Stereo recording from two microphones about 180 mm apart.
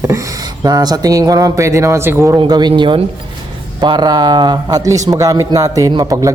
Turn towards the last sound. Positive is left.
turn(degrees=-20)  # may be behind; listen again after turning